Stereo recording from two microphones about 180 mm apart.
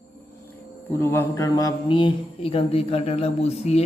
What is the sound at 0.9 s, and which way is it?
Speech, 15° left (ahead or behind).